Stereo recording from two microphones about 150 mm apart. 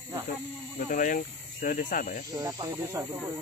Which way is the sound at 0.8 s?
60° left (ahead or behind).